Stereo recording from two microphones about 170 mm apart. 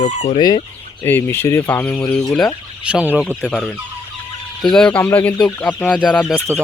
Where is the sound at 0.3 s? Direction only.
25° left (ahead or behind).